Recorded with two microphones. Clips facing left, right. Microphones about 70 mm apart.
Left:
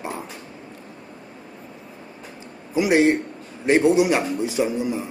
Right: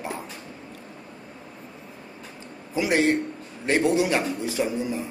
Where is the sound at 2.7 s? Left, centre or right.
Centre.